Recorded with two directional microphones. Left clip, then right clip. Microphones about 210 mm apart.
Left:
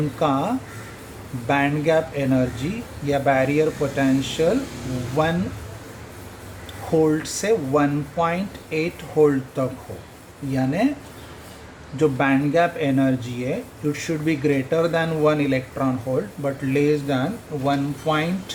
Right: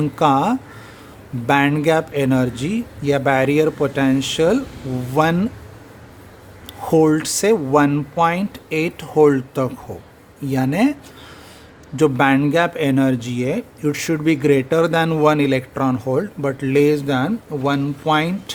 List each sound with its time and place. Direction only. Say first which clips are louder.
0.2 s speech: right 6 dB; 55° right (ahead or behind)
6.9 s speech: right 4 dB; 55° right (ahead or behind)
11.9 s speech: right 4 dB; 55° right (ahead or behind)